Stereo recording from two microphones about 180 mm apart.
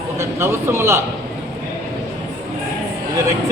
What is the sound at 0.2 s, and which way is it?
Speech, 15° right (ahead or behind).